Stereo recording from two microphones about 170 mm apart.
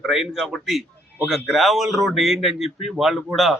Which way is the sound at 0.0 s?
Centre (ahead or behind).